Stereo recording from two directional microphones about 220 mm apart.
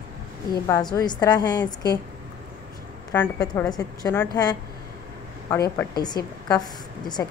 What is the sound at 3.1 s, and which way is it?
Speech, 15° left (ahead or behind).